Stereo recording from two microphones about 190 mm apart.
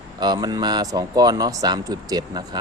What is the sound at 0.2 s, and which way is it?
Speech, 20° right (ahead or behind).